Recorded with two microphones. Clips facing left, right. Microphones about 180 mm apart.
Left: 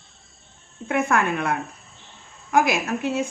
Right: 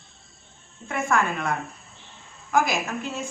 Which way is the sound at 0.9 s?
65° left (ahead or behind).